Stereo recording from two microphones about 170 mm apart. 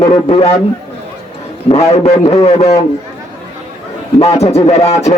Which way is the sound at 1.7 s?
40° left (ahead or behind).